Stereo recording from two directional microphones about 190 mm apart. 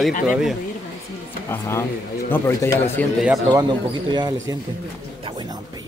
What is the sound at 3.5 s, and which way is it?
Speech, 20° right (ahead or behind).